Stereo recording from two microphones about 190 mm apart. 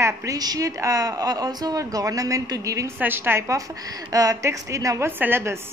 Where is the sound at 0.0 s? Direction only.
15° right (ahead or behind).